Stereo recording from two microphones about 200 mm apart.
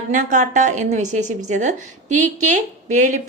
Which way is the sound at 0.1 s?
40° right (ahead or behind).